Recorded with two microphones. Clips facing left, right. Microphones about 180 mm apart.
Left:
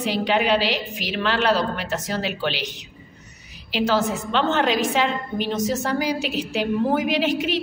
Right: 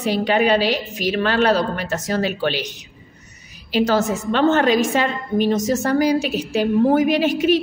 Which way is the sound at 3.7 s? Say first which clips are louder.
Right 3 dB; 45° right (ahead or behind).